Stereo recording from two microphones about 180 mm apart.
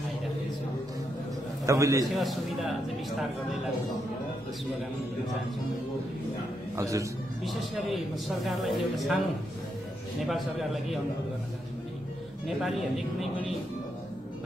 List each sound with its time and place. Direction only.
1.7 s a man's voice: 15° right (ahead or behind)
2.0 s a man's voice: centre (ahead or behind)
6.8 s a man's voice: 15° right (ahead or behind)
7.4 s a man's voice: centre (ahead or behind)
10.2 s a man's voice: centre (ahead or behind)
12.4 s a man's voice: centre (ahead or behind)